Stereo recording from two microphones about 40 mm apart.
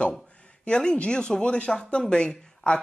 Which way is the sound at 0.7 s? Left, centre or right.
Left.